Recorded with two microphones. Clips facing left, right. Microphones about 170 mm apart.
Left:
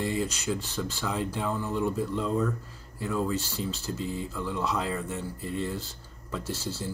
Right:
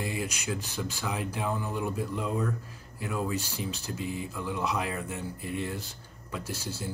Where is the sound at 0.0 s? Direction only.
10° right (ahead or behind).